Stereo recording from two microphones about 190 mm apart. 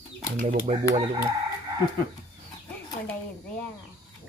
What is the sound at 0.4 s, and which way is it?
Speech, 30° right (ahead or behind).